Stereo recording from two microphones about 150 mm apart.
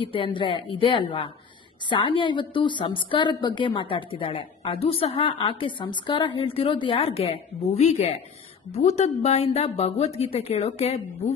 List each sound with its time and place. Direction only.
0.0 s a woman's voice: 35° left (ahead or behind)